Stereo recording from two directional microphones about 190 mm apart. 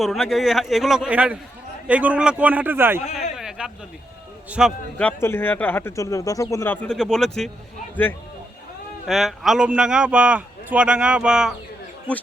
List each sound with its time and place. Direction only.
0.0 s a man's voice: centre (ahead or behind)
3.0 s speech: 35° left (ahead or behind)
3.3 s a sound: 5° right (ahead or behind)
4.4 s a man's voice: 5° right (ahead or behind)
4.9 s speech: 10° left (ahead or behind)
6.8 s a man's voice: 5° left (ahead or behind)
9.0 s a man's voice: centre (ahead or behind)